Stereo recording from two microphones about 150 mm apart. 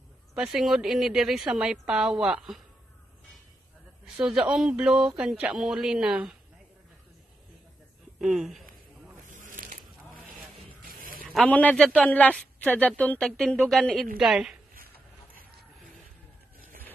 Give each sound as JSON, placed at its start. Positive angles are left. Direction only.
{"t": 0.3, "sound": "speech", "side_deg": -5}
{"t": 4.0, "sound": "speech", "side_deg": -5}
{"t": 8.2, "sound": "speech", "side_deg": -5}
{"t": 9.3, "sound": "a sound", "side_deg": -60}
{"t": 10.8, "sound": "a sound", "side_deg": -70}
{"t": 11.4, "sound": "speech", "side_deg": 10}